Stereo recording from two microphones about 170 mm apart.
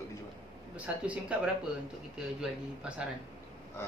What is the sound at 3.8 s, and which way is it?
Speech, 15° left (ahead or behind).